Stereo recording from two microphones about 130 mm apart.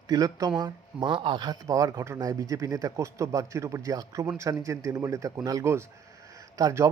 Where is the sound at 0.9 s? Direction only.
40° right (ahead or behind).